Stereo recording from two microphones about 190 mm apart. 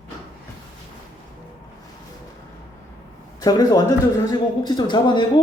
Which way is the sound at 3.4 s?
20° left (ahead or behind).